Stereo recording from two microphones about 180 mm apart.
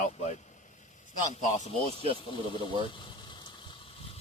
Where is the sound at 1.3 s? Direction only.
40° left (ahead or behind).